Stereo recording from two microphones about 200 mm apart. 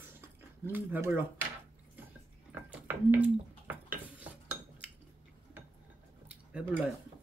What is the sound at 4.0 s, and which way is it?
Cutlery, 10° right (ahead or behind).